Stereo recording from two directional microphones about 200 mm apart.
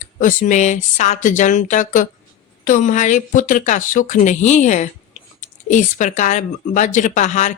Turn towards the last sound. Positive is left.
turn(degrees=35)  # may be behind; listen again after turning